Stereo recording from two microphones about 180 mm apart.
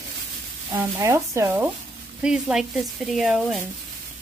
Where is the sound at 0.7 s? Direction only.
15° right (ahead or behind).